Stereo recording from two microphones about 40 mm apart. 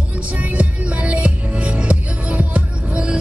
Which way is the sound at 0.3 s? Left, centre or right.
Right.